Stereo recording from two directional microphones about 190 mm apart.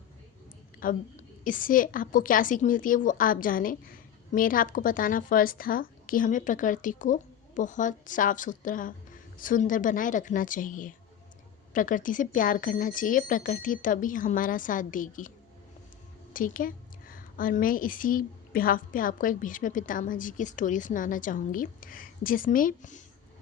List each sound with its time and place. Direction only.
0.8 s a woman's voice: 45° left (ahead or behind)
16.3 s a woman's voice: 45° left (ahead or behind)